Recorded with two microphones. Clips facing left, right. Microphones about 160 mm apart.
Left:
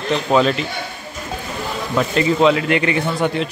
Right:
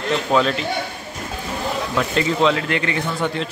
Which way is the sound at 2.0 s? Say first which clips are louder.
Left 4 dB; 10° left (ahead or behind).